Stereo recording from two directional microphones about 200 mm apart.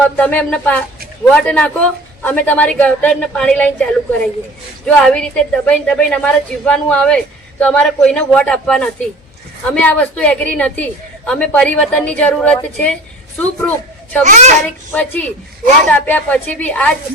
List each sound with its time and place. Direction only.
0.2 s a woman's voice: 5° left (ahead or behind)
4.9 s a woman's voice: 5° left (ahead or behind)
14.3 s a child's voice: 35° right (ahead or behind)
14.9 s a woman's voice: 5° left (ahead or behind)